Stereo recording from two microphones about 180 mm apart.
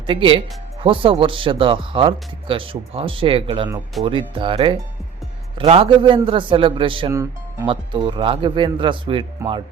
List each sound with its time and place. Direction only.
0.1 s speech: 30° right (ahead or behind)
7.1 s speech: 15° right (ahead or behind)
7.7 s speech: 25° right (ahead or behind)